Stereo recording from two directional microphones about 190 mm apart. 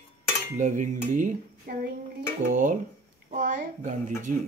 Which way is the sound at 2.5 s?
40° right (ahead or behind).